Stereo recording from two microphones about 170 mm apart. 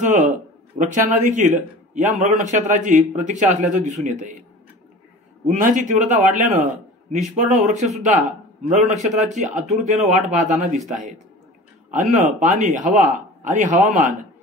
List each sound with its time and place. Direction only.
0.0 s speech: 50° right (ahead or behind)
5.6 s speech: 50° right (ahead or behind)